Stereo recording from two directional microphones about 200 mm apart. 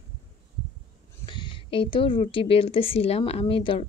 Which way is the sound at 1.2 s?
25° left (ahead or behind).